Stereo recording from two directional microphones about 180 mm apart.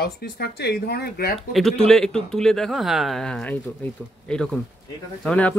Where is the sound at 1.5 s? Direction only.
Centre (ahead or behind).